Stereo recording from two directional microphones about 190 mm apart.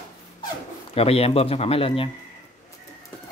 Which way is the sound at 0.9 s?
30° left (ahead or behind).